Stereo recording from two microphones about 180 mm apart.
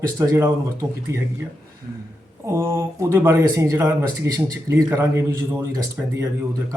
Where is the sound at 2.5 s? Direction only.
15° right (ahead or behind).